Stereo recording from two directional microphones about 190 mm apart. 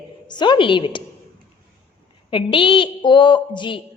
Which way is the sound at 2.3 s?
25° left (ahead or behind).